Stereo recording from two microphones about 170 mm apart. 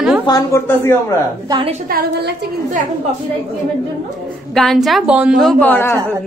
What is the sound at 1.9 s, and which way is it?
Speech, 65° right (ahead or behind).